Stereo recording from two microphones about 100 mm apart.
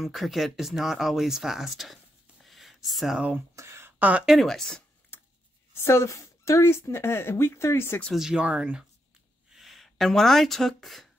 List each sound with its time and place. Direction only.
0.0 s speech: centre (ahead or behind)
2.4 s a sound: centre (ahead or behind)
3.5 s a sound: 25° right (ahead or behind)
4.3 s speech: centre (ahead or behind)
5.8 s speech: 25° left (ahead or behind)
8.1 s speech: 5° right (ahead or behind)